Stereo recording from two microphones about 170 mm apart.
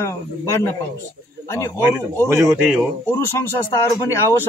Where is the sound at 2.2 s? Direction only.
15° right (ahead or behind).